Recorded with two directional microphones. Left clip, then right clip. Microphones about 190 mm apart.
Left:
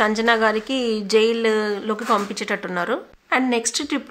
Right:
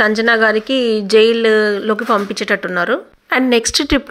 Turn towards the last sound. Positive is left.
turn(degrees=-30)  # may be behind; listen again after turning